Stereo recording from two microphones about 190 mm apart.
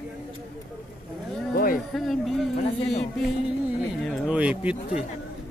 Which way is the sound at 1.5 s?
50° left (ahead or behind).